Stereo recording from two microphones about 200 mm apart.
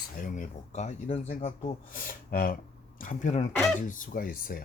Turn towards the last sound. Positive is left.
turn(degrees=45)  # may be behind; listen again after turning